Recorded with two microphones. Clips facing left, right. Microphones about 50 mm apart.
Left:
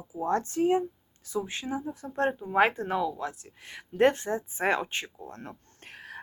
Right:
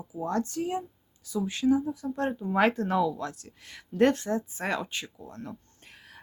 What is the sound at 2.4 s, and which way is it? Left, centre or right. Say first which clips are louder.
Speech: right 1 dB; centre.